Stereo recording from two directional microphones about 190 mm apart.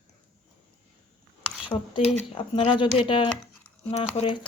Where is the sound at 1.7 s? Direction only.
20° left (ahead or behind).